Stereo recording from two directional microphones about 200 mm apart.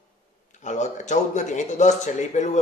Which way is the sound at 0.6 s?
35° left (ahead or behind).